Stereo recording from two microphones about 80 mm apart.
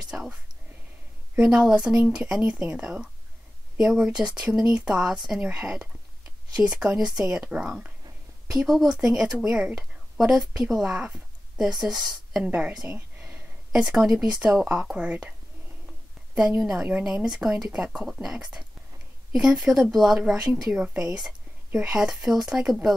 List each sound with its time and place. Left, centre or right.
0.1 s speech: centre
1.3 s speech: centre
12.4 s speech: centre
16.3 s speech: centre